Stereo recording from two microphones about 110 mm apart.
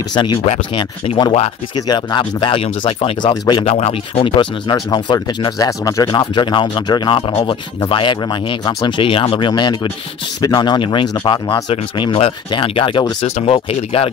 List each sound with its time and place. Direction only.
0.1 s speech: 45° left (ahead or behind)
3.6 s speech: 70° left (ahead or behind); by 5.7 s 40° left (ahead or behind)
5.7 s speech: 30° left (ahead or behind)
6.1 s speech: 45° left (ahead or behind)
9.5 s speech: 40° left (ahead or behind); by 14.1 s 60° left (ahead or behind)